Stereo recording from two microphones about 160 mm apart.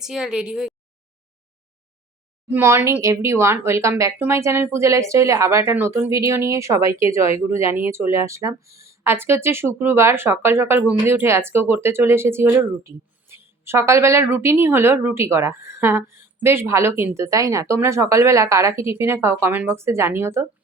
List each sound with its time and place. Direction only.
0.0 s speech: 5° right (ahead or behind)
2.5 s speech: 15° right (ahead or behind)